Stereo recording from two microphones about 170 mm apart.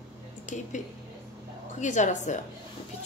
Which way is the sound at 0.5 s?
45° left (ahead or behind).